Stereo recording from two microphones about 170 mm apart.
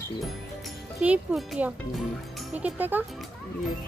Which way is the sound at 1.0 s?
5° right (ahead or behind).